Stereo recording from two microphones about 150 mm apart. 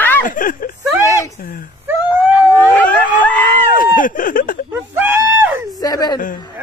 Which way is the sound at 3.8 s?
65° left (ahead or behind).